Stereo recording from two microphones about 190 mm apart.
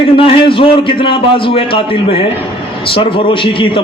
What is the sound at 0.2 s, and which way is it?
A man's voice, 30° left (ahead or behind).